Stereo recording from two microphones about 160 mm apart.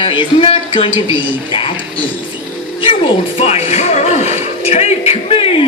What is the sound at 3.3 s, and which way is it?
Speech, 40° left (ahead or behind).